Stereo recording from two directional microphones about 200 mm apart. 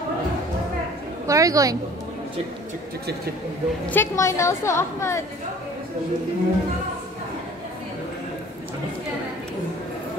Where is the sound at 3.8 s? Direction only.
15° left (ahead or behind).